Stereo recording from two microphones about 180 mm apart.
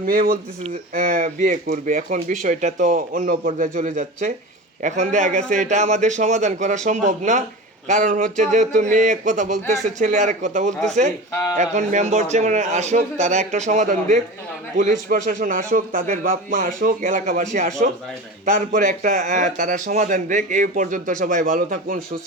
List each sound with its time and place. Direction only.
0.0 s a man's voice: 50° right (ahead or behind)